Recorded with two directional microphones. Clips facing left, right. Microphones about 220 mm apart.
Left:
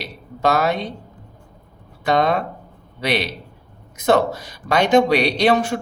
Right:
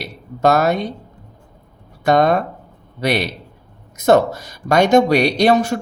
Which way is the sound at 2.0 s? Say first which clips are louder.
Right 4 dB; 45° right (ahead or behind).